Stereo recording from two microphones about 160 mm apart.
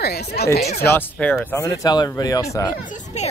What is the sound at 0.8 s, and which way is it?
Speech, 15° left (ahead or behind).